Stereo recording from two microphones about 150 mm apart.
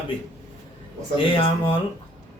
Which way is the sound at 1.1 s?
35° left (ahead or behind).